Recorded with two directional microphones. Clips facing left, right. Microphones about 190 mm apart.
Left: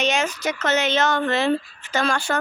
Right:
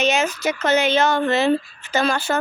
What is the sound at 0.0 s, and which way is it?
Speech, 5° right (ahead or behind).